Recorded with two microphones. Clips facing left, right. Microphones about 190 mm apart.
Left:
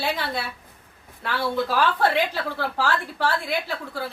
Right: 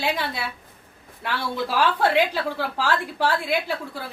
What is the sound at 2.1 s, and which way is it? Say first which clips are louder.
A woman's voice: right 3 dB; 15° right (ahead or behind).